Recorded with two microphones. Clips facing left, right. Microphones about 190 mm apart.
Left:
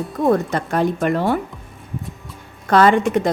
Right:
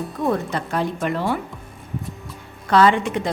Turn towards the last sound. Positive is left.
turn(degrees=45)  # may be behind; listen again after turning